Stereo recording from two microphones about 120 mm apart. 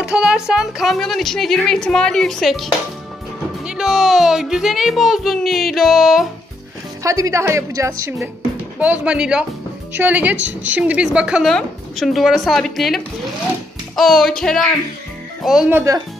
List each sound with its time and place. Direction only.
0.0 s speech: 5° right (ahead or behind)
7.0 s a woman's voice: 25° right (ahead or behind)
8.7 s a woman's voice: 10° right (ahead or behind); by 14.7 s 5° left (ahead or behind)
15.7 s a woman's voice: 25° right (ahead or behind)